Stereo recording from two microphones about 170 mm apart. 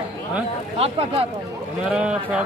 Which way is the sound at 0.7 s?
35° right (ahead or behind).